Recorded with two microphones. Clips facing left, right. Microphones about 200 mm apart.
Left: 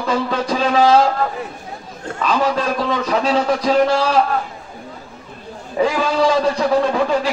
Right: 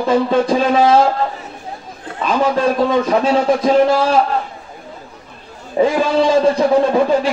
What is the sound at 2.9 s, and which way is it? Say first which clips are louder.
A man's voice: right 4 dB; 25° right (ahead or behind).